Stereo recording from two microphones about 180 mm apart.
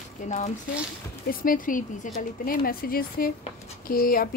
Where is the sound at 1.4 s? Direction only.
50° left (ahead or behind).